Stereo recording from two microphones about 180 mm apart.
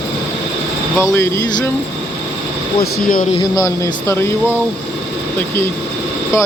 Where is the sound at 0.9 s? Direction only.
15° left (ahead or behind).